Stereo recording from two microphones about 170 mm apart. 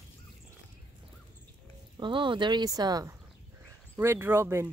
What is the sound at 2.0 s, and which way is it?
Speech, 30° right (ahead or behind).